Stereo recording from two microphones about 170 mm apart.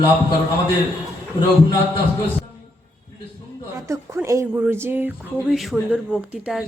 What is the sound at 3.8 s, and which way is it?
Speech, 15° right (ahead or behind).